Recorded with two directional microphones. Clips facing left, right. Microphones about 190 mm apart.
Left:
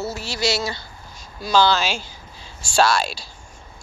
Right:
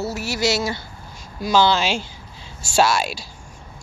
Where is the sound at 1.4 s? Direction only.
20° right (ahead or behind).